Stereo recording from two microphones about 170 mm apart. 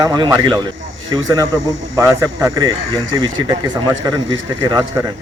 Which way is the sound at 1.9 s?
15° right (ahead or behind).